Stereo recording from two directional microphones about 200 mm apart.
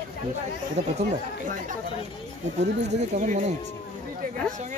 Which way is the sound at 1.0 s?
40° right (ahead or behind).